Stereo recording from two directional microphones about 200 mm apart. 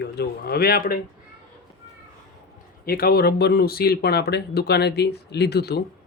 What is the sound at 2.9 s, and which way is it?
Speech, 50° left (ahead or behind).